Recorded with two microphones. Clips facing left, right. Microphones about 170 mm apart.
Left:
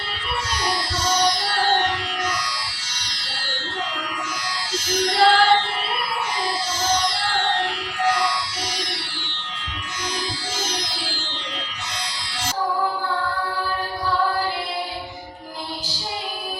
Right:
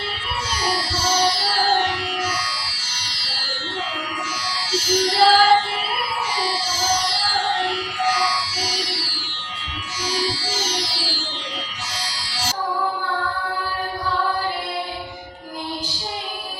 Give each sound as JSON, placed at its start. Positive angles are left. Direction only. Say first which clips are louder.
{"t": 0.6, "sound": "music", "louder": "right 3 dB", "side_deg": -5}
{"t": 4.7, "sound": "music", "louder": "right 3 dB", "side_deg": -5}